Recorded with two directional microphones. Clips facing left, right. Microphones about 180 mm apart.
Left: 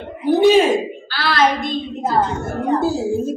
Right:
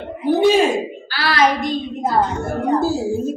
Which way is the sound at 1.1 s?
10° right (ahead or behind).